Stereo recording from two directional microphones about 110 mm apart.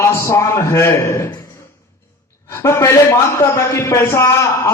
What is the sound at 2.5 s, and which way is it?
A man's voice, 25° left (ahead or behind).